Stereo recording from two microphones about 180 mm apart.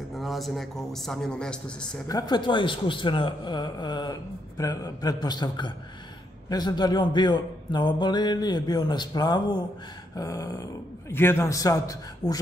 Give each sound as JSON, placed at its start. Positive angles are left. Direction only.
{"t": 0.1, "sound": "a man's voice", "side_deg": 0}
{"t": 1.8, "sound": "a man's voice", "side_deg": 20}